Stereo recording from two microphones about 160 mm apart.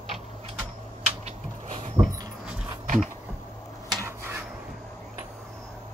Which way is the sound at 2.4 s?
5° right (ahead or behind).